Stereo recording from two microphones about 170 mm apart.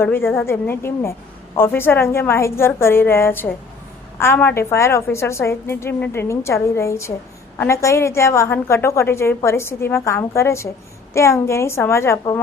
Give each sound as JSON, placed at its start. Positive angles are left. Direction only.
{"t": 0.0, "sound": "a woman's voice", "side_deg": 15}